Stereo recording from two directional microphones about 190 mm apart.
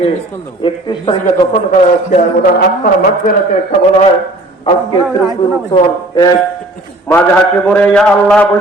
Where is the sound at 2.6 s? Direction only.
50° left (ahead or behind).